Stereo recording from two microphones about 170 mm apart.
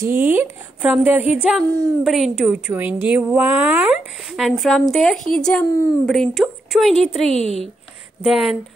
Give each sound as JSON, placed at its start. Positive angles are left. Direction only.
{"t": 0.0, "sound": "a woman's voice", "side_deg": -10}
{"t": 7.3, "sound": "speech", "side_deg": -35}
{"t": 8.2, "sound": "a woman's voice", "side_deg": 0}